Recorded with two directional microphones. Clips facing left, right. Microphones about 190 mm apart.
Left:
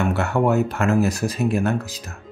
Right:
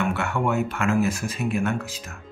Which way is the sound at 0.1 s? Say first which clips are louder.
Left 5 dB; 40° left (ahead or behind).